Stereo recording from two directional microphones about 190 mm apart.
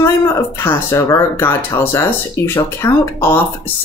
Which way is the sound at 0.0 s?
15° left (ahead or behind).